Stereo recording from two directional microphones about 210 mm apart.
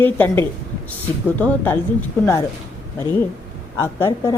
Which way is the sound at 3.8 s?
10° left (ahead or behind).